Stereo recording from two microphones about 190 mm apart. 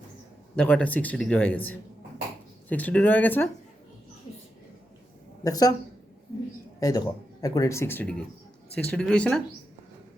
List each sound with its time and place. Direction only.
0.5 s speech: 5° left (ahead or behind)
5.4 s a woman's voice: 20° left (ahead or behind)
6.7 s speech: 20° left (ahead or behind)